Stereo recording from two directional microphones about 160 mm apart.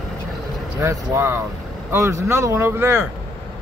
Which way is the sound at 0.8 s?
15° right (ahead or behind).